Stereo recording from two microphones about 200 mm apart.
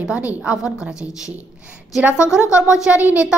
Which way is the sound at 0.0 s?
5° right (ahead or behind).